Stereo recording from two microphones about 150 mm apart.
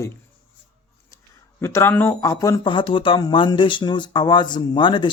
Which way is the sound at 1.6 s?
15° left (ahead or behind).